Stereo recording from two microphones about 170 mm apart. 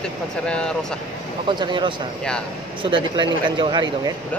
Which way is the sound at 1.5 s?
25° right (ahead or behind).